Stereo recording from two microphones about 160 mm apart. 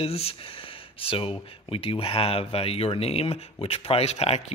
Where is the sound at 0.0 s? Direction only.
40° left (ahead or behind).